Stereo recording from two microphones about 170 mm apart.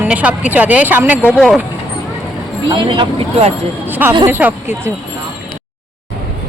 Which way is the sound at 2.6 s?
30° right (ahead or behind).